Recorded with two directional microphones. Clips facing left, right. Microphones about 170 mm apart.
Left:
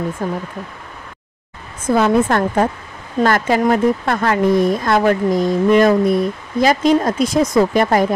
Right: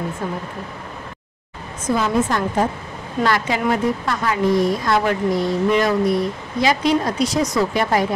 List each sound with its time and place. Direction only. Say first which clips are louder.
0.2 s speech: left 4 dB; 45° left (ahead or behind)
1.9 s speech: left 5 dB; 55° left (ahead or behind)
3.3 s speech: left 5 dB; 50° left (ahead or behind)